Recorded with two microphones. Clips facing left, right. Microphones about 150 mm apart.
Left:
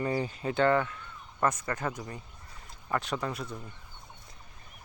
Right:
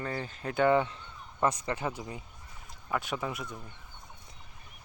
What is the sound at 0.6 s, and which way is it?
Speech, 20° right (ahead or behind).